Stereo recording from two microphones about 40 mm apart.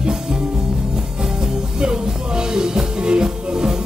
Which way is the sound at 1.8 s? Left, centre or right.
Right.